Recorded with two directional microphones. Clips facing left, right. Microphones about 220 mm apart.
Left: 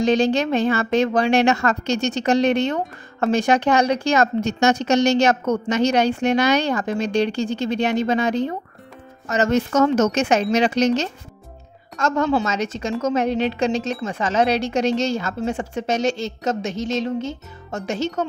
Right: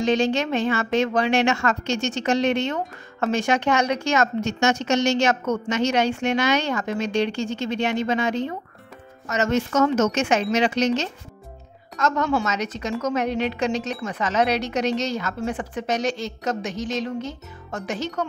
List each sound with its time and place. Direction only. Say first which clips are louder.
0.0 s a woman's voice: left 3 dB; 35° left (ahead or behind)
12.0 s speech: left 3 dB; 25° left (ahead or behind)